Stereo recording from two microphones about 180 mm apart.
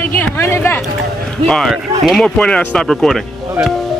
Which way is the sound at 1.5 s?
Centre (ahead or behind).